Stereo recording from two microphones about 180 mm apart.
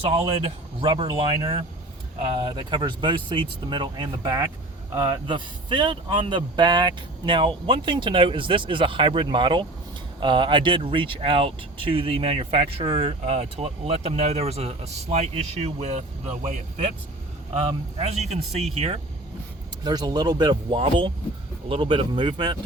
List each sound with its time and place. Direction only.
0.0 s speech: 30° right (ahead or behind)
19.8 s speech: 20° right (ahead or behind)